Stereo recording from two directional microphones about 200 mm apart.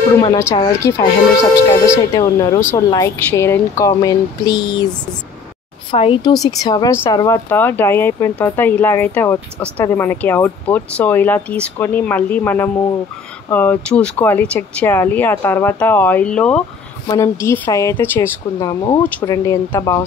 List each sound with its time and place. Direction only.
0.2 s speech: 15° left (ahead or behind)
5.9 s speech: 25° left (ahead or behind)